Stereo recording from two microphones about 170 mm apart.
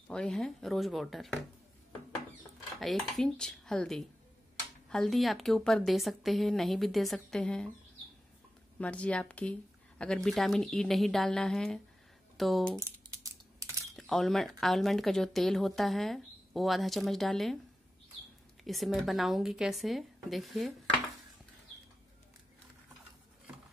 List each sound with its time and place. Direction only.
0.1 s speech: 5° left (ahead or behind)
2.8 s speech: centre (ahead or behind)
8.7 s speech: 5° left (ahead or behind)
12.7 s typing: 20° right (ahead or behind)
13.9 s speech: centre (ahead or behind)
18.6 s speech: centre (ahead or behind)